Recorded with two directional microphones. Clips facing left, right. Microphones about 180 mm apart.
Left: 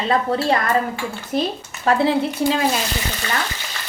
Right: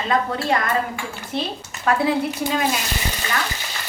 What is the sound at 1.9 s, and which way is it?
Speech, 25° left (ahead or behind).